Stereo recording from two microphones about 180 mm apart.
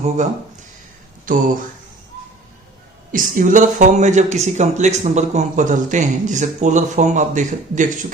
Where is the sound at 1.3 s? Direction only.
50° right (ahead or behind).